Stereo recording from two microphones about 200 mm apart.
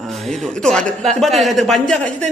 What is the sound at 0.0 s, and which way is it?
A woman's voice, centre (ahead or behind).